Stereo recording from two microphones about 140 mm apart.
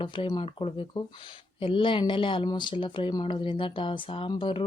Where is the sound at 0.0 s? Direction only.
35° left (ahead or behind).